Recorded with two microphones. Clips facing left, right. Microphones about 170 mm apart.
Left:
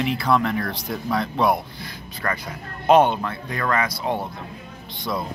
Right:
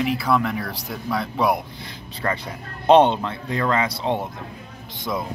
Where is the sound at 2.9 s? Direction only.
25° right (ahead or behind).